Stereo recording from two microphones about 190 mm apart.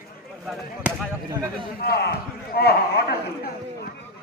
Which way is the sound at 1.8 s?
55° left (ahead or behind).